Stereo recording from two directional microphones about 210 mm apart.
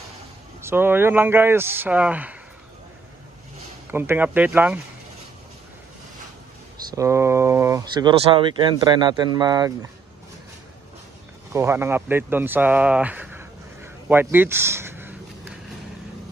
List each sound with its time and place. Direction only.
0.6 s speech: 10° right (ahead or behind)
3.9 s speech: 10° right (ahead or behind)
7.0 s speech: 15° right (ahead or behind)
11.5 s speech: 10° right (ahead or behind)